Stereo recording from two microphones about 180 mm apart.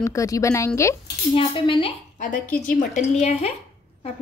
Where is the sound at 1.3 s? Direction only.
30° left (ahead or behind).